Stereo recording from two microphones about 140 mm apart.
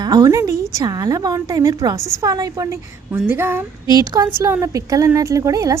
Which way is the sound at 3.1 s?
15° right (ahead or behind).